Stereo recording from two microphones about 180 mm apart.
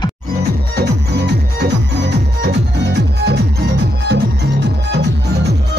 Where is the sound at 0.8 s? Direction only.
70° right (ahead or behind).